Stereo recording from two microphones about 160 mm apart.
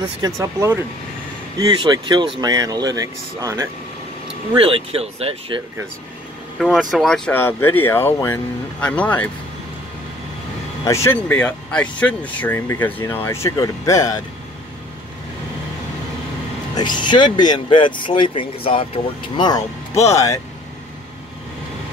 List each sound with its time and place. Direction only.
0.2 s speech: 20° right (ahead or behind)
4.6 s speech: 35° right (ahead or behind)
6.6 s speech: centre (ahead or behind)
10.9 s speech: 15° left (ahead or behind)
16.7 s speech: 25° left (ahead or behind)